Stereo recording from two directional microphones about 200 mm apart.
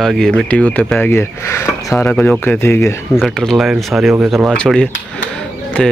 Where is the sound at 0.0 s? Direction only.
5° left (ahead or behind).